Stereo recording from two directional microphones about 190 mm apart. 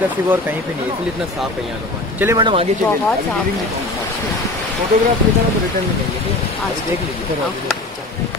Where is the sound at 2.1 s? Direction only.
15° right (ahead or behind).